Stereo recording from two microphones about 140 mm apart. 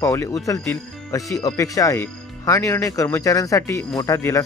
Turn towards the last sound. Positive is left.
turn(degrees=20)  # may be behind; listen again after turning